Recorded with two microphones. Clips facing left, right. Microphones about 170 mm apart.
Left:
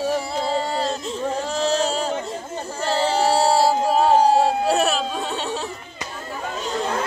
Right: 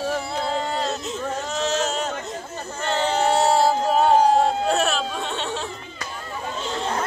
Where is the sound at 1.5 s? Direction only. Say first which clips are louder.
Left 2 dB; 35° left (ahead or behind).